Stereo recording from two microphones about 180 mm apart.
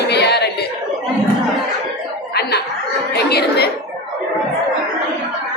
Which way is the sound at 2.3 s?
65° left (ahead or behind).